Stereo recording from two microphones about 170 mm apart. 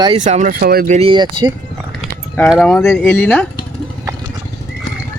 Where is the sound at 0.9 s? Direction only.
30° right (ahead or behind).